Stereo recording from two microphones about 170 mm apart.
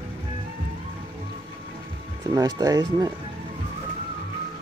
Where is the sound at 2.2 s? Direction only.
25° right (ahead or behind).